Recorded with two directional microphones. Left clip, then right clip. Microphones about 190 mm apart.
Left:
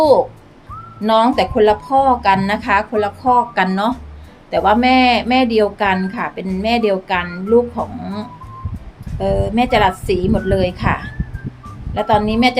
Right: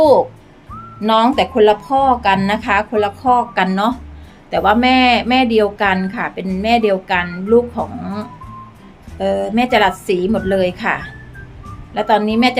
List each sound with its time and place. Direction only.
1.0 s speech: 10° right (ahead or behind)